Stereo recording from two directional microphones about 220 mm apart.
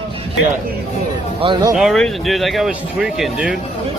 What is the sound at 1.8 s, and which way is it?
Speech, centre (ahead or behind).